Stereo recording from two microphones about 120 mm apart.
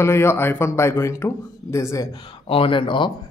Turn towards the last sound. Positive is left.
turn(degrees=40)  # may be behind; listen again after turning